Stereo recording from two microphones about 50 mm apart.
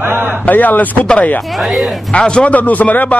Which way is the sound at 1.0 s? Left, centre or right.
Left.